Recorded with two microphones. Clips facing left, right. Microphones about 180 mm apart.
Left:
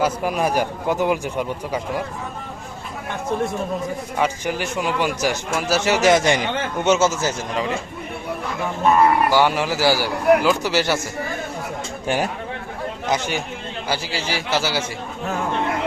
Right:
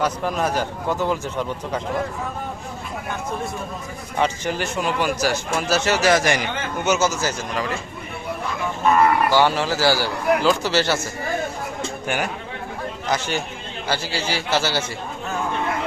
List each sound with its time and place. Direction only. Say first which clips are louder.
0.0 s a man's voice: left 2 dB; 10° left (ahead or behind)
4.2 s a man's voice: right 1 dB; 10° left (ahead or behind)
9.3 s a man's voice: even; 15° left (ahead or behind)
12.0 s speech: left 4 dB; 30° left (ahead or behind)
13.1 s a man's voice: left 1 dB; 15° left (ahead or behind)